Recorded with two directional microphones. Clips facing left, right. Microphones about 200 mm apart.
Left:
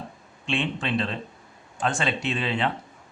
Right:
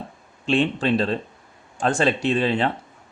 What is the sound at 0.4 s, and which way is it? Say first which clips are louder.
Speech: right 7 dB; 40° right (ahead or behind).